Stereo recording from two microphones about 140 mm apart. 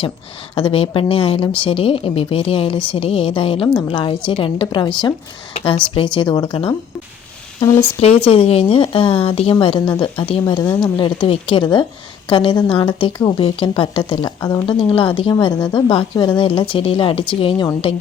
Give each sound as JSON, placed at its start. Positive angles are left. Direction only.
{"t": 0.5, "sound": "speech", "side_deg": 40}
{"t": 8.0, "sound": "speech", "side_deg": 45}